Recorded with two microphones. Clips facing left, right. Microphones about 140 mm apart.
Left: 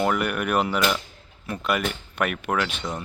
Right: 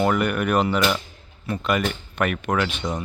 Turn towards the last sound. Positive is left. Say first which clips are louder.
# right 3 dB
turn(degrees=0)  # may be behind; listen again after turning